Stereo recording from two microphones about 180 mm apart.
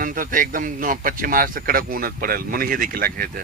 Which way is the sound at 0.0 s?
50° right (ahead or behind).